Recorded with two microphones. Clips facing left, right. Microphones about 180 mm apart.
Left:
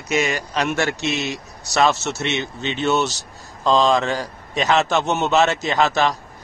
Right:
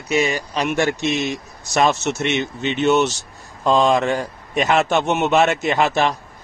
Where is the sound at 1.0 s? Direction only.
45° right (ahead or behind).